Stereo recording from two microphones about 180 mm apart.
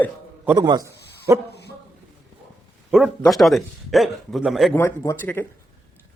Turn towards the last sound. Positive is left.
turn(degrees=15)  # may be behind; listen again after turning